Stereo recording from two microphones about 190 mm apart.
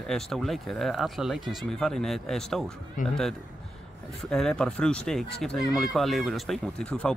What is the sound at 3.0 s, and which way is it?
Speech, 45° left (ahead or behind).